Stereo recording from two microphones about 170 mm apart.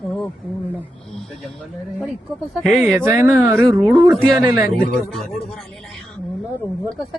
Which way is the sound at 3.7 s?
25° right (ahead or behind).